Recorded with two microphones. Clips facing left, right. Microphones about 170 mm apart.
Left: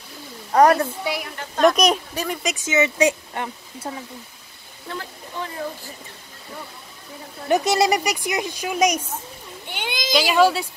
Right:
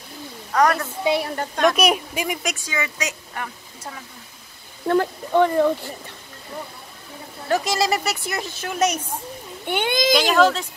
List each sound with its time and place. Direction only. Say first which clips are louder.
0.5 s speech: left 4 dB; 30° left (ahead or behind)
1.0 s a woman's voice: right 6 dB; 25° right (ahead or behind)
1.8 s speech: even; 10° right (ahead or behind)
2.5 s speech: left 7 dB; 20° left (ahead or behind)
4.8 s speech: right 14 dB; 60° right (ahead or behind)
7.4 s speech: left 3 dB; 20° left (ahead or behind)
9.7 s a child's voice: right 9 dB; 55° right (ahead or behind)
10.1 s speech: left 2 dB; 5° left (ahead or behind)